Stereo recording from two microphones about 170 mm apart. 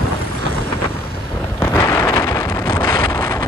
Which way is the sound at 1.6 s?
15° left (ahead or behind).